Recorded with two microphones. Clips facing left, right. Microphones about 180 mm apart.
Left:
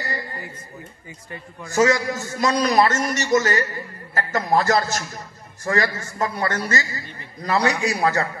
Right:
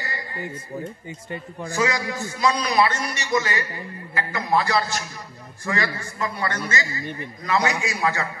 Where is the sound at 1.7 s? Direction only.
45° left (ahead or behind).